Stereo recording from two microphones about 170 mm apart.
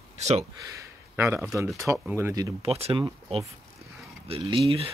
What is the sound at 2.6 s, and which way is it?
Speech, 35° right (ahead or behind).